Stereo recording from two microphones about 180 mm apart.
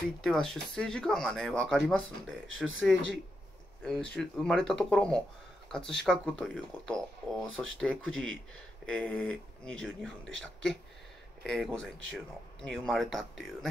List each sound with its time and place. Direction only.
0.2 s speech: centre (ahead or behind)
2.4 s speech: 90° right
3.8 s speech: 5° left (ahead or behind)